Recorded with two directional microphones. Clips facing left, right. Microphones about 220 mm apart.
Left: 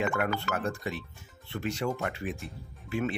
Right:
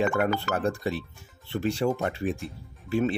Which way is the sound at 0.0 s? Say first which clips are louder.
Right 5 dB; 30° right (ahead or behind).